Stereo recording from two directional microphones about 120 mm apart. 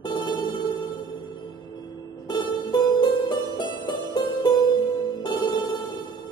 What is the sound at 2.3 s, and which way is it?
Music, 35° left (ahead or behind).